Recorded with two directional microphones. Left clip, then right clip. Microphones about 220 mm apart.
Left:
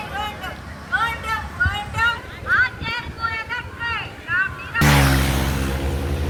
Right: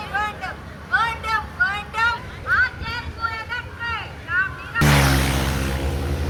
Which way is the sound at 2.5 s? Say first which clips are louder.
Left 1 dB; 20° right (ahead or behind).